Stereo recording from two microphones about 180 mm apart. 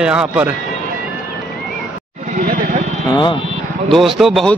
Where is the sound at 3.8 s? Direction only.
Centre (ahead or behind).